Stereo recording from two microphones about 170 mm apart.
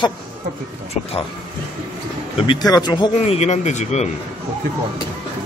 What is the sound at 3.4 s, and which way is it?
Speech, 40° left (ahead or behind).